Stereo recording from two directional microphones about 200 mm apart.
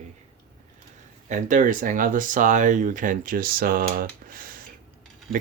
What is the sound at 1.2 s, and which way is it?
Speech, 40° right (ahead or behind).